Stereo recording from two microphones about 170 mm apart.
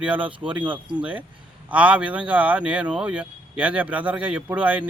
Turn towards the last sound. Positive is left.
turn(degrees=-10)  # may be behind; listen again after turning